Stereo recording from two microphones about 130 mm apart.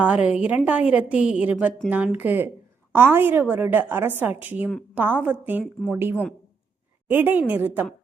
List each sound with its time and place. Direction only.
0.0 s a woman's voice: 10° right (ahead or behind)